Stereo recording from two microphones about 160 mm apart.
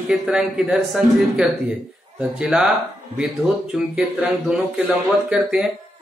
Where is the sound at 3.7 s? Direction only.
5° right (ahead or behind).